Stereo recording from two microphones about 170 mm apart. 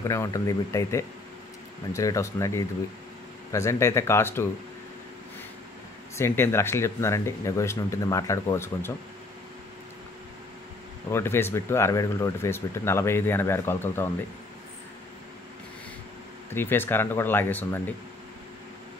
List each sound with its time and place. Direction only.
0.1 s speech: 20° left (ahead or behind)
6.1 s speech: 15° left (ahead or behind)
11.1 s speech: 15° left (ahead or behind)
16.4 s speech: 15° left (ahead or behind)